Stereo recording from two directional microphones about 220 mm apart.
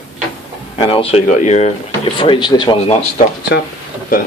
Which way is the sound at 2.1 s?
20° left (ahead or behind).